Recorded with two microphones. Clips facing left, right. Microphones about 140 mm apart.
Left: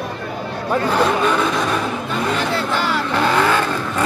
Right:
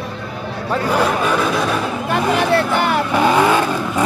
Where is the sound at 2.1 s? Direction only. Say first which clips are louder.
Right 7 dB; 60° right (ahead or behind).